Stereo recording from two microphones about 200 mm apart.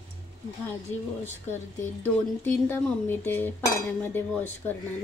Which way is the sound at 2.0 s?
10° left (ahead or behind).